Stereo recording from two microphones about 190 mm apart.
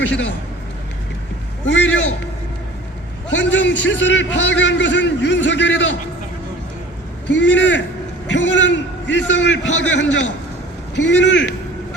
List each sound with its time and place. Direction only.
0.0 s a man's voice: 70° left (ahead or behind)
1.6 s a man's voice: 70° left (ahead or behind)
3.3 s a man's voice: 70° left (ahead or behind)
7.3 s a man's voice: 70° left (ahead or behind)